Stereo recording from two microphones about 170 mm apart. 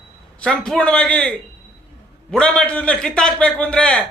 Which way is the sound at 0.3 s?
5° left (ahead or behind).